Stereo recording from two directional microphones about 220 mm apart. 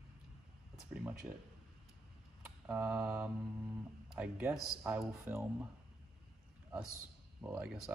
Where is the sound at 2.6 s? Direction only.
10° right (ahead or behind).